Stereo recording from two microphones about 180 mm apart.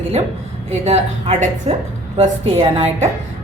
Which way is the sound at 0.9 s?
35° right (ahead or behind).